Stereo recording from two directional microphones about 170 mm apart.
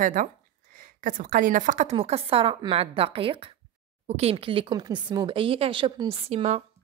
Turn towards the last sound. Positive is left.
turn(degrees=-40)  # may be behind; listen again after turning